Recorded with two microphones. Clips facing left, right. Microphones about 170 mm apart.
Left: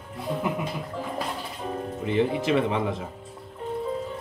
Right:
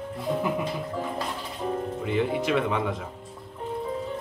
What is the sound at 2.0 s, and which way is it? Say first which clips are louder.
Speech: left 3 dB; 30° left (ahead or behind).